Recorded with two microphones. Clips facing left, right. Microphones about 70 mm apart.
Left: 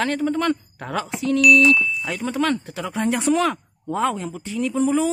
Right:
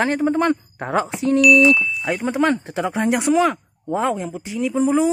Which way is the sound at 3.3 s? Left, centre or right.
Centre.